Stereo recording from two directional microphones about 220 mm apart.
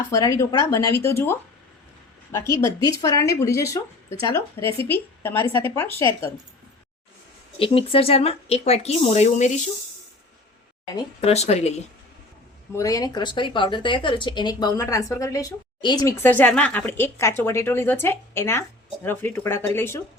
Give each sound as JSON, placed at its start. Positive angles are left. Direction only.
{"t": 0.1, "sound": "speech", "side_deg": 15}
{"t": 7.6, "sound": "speech", "side_deg": 25}
{"t": 10.9, "sound": "speech", "side_deg": 25}
{"t": 12.7, "sound": "speech", "side_deg": 15}